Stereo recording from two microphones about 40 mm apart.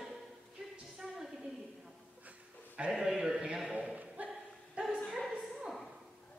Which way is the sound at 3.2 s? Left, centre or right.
Centre.